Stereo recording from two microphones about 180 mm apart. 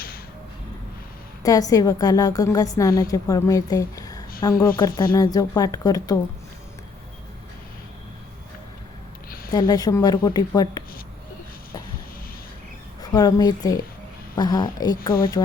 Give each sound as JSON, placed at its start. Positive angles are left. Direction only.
{"t": 1.4, "sound": "a woman's voice", "side_deg": 20}
{"t": 9.5, "sound": "a woman's voice", "side_deg": 20}
{"t": 13.0, "sound": "a woman's voice", "side_deg": 20}